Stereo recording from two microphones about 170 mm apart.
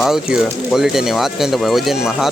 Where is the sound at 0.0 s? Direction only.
5° right (ahead or behind).